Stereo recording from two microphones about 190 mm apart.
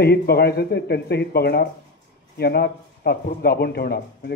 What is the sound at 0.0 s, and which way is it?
Speech, 55° left (ahead or behind).